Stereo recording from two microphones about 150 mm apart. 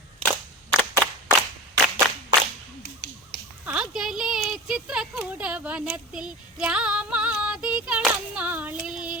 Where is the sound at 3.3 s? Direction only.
90° left.